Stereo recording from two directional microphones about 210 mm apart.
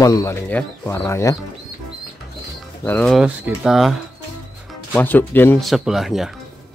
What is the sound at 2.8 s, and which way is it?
Speech, 5° left (ahead or behind).